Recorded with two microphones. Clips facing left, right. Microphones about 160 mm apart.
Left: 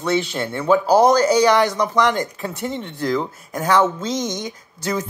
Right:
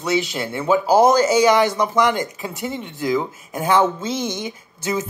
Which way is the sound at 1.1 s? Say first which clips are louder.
Even; 20° right (ahead or behind).